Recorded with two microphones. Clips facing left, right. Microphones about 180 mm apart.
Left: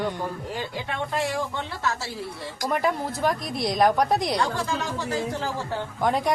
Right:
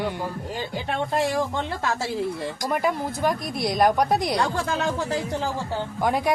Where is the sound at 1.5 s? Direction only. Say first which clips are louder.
Right 2 dB; 45° right (ahead or behind).